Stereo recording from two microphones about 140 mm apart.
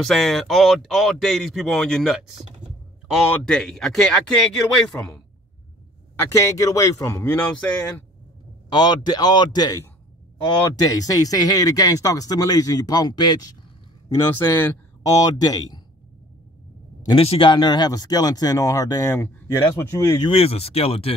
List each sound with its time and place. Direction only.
0.0 s speech: centre (ahead or behind)
6.1 s speech: 20° left (ahead or behind)
8.6 s speech: 30° left (ahead or behind)
10.8 s speech: 25° left (ahead or behind)
14.3 s speech: 15° left (ahead or behind)
17.2 s speech: 40° left (ahead or behind); by 20.2 s 20° left (ahead or behind)
20.2 s speech: 45° left (ahead or behind)